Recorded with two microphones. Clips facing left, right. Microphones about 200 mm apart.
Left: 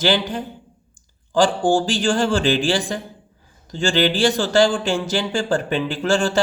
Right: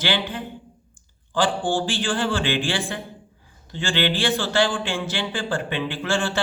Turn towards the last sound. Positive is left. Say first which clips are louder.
# left 6 dB
turn(degrees=40)  # may be behind; listen again after turning